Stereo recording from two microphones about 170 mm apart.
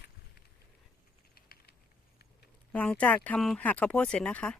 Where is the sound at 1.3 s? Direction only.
60° left (ahead or behind).